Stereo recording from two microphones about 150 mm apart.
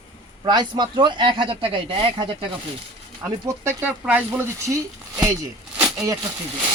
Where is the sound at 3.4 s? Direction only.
15° right (ahead or behind).